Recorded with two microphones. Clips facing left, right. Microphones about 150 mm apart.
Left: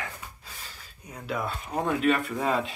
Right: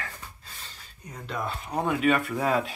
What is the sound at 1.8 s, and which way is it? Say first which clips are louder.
Speech: right 1 dB; centre (ahead or behind).